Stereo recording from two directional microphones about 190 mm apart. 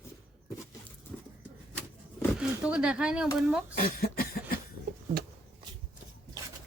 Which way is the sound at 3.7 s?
50° left (ahead or behind).